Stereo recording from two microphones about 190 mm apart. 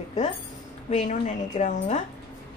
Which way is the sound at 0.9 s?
40° left (ahead or behind).